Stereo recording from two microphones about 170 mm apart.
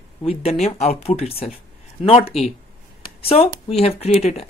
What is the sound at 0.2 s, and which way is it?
Speech, 35° left (ahead or behind).